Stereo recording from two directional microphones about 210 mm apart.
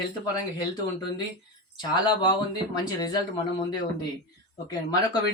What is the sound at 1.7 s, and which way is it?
Speech, 20° left (ahead or behind).